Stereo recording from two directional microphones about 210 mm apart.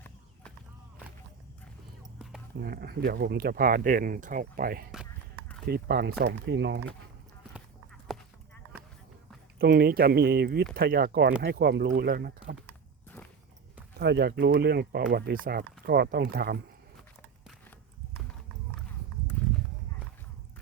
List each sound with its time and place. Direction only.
2.6 s speech: 45° right (ahead or behind)
8.0 s a sound: centre (ahead or behind)
9.6 s speech: 45° right (ahead or behind)
12.6 s walk: 10° left (ahead or behind)
14.0 s speech: 50° right (ahead or behind)